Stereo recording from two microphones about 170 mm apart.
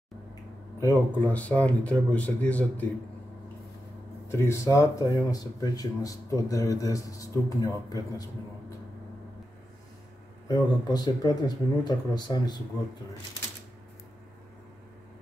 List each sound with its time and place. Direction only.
0.7 s speech: 15° left (ahead or behind)
4.3 s speech: 15° left (ahead or behind)
10.5 s speech: 25° left (ahead or behind)